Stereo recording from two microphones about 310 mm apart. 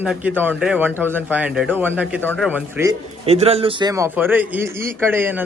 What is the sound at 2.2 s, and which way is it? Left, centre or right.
Speech, centre.